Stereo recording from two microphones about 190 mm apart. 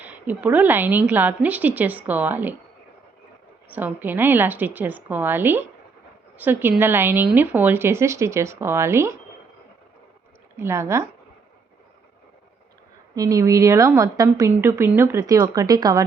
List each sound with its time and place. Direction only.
0.0 s a woman's voice: 10° right (ahead or behind)
3.7 s a woman's voice: 10° right (ahead or behind)
10.6 s a woman's voice: 15° right (ahead or behind)
13.1 s a woman's voice: 15° right (ahead or behind)